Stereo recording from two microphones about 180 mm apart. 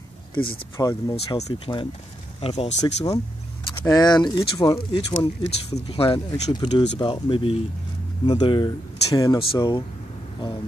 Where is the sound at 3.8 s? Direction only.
20° left (ahead or behind).